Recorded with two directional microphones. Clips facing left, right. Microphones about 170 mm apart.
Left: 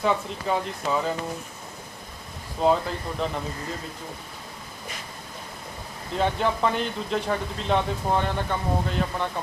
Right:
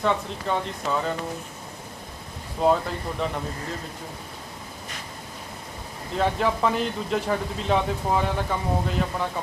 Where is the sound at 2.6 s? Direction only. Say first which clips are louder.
Even; centre (ahead or behind).